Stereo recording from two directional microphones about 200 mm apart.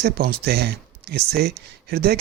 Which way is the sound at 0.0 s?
50° right (ahead or behind).